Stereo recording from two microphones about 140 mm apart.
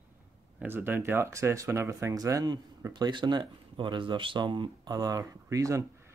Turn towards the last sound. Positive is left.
turn(degrees=-25)  # may be behind; listen again after turning